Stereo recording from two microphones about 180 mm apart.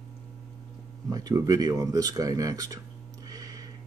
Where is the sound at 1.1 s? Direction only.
20° right (ahead or behind).